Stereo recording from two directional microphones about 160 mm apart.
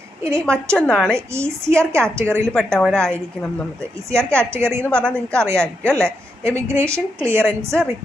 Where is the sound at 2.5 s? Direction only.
5° left (ahead or behind).